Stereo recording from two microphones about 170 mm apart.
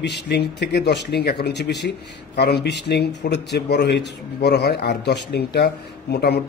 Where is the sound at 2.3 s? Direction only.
70° left (ahead or behind).